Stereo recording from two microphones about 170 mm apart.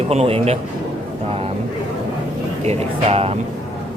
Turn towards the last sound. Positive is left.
turn(degrees=-35)  # may be behind; listen again after turning